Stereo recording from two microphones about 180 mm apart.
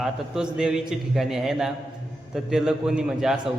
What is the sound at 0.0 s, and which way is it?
A man's voice, 5° right (ahead or behind).